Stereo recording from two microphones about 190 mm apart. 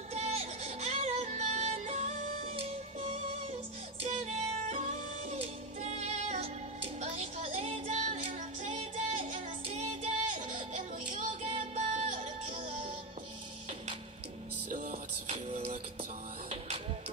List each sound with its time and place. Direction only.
0.1 s music: 35° right (ahead or behind)
14.7 s music: 45° right (ahead or behind)
15.2 s music: 30° right (ahead or behind)